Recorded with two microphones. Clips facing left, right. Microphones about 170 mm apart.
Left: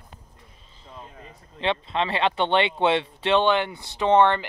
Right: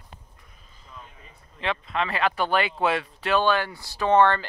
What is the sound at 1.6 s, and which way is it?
Speech, 30° left (ahead or behind).